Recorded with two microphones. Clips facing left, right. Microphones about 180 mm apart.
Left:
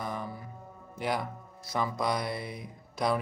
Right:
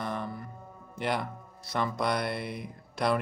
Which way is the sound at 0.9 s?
Centre (ahead or behind).